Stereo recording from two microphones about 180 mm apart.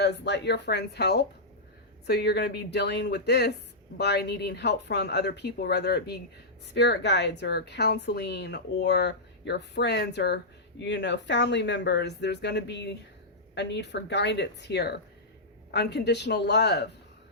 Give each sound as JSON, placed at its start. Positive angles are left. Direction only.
{"t": 0.0, "sound": "a woman's voice", "side_deg": 70}